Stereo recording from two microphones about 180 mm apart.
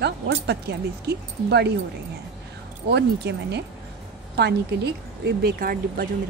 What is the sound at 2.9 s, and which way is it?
Speech, 70° right (ahead or behind).